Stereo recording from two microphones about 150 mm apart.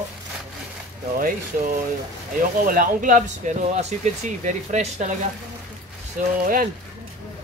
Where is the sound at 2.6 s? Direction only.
65° right (ahead or behind); by 5.1 s 50° right (ahead or behind).